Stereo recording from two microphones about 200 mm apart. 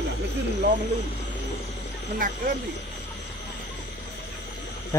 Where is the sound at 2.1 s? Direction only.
45° right (ahead or behind).